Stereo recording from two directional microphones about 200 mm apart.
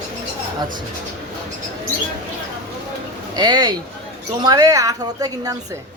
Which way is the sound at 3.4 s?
20° right (ahead or behind).